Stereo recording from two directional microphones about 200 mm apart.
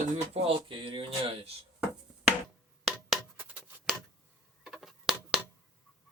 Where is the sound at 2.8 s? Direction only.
Centre (ahead or behind).